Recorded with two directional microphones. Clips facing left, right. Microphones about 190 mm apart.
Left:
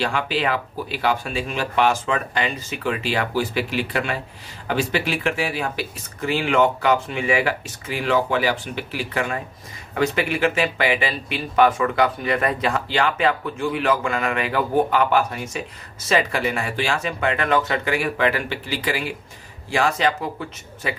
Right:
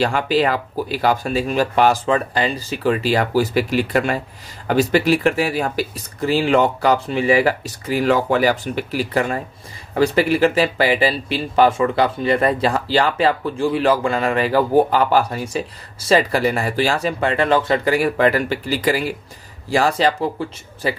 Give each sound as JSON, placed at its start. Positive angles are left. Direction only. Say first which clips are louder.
{"t": 0.0, "sound": "speech", "louder": "right 5 dB", "side_deg": -40}